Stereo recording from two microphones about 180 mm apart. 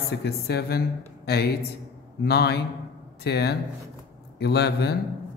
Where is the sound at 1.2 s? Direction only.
65° left (ahead or behind).